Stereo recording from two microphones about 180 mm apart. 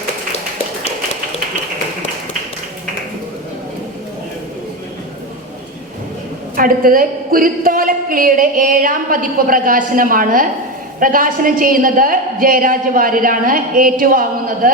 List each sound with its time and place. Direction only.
6.6 s a woman's voice: 50° right (ahead or behind)